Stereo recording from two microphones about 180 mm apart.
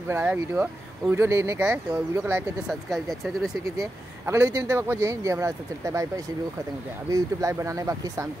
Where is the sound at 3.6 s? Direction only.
20° right (ahead or behind).